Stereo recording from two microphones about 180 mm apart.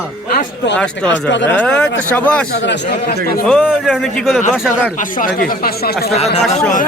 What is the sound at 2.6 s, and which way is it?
Speech, 65° left (ahead or behind).